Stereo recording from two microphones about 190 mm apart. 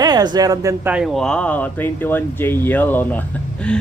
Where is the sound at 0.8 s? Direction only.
5° right (ahead or behind).